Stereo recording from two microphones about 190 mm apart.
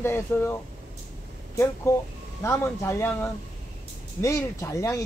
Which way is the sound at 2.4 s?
15° left (ahead or behind).